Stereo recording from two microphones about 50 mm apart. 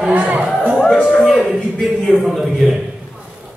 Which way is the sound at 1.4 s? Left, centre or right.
Centre.